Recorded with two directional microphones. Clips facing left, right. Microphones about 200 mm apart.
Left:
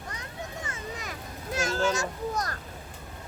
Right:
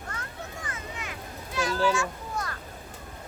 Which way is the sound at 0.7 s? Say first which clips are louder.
Left 1 dB; 40° left (ahead or behind).